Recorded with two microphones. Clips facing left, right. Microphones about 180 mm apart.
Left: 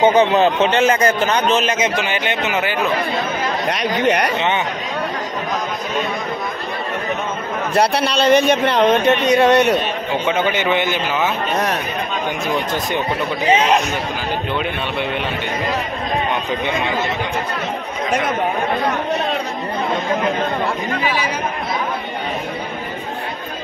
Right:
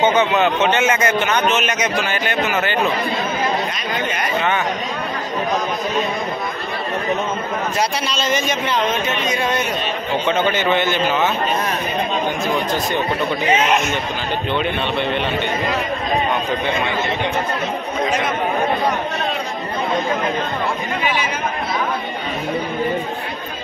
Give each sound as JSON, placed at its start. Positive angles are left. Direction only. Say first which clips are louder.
{"t": 0.0, "sound": "a man's voice", "louder": "left 3 dB", "side_deg": 35}
{"t": 3.6, "sound": "speech", "louder": "left 6 dB", "side_deg": 70}
{"t": 7.7, "sound": "a man's voice", "louder": "left 9 dB", "side_deg": 60}
{"t": 10.2, "sound": "a man's voice", "louder": "even", "side_deg": 10}
{"t": 13.5, "sound": "a man's voice", "louder": "left 3 dB", "side_deg": 35}
{"t": 14.5, "sound": "speech", "louder": "right 2 dB", "side_deg": 5}